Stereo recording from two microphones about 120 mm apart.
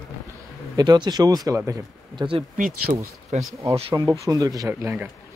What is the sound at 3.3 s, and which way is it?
Speech, 70° right (ahead or behind).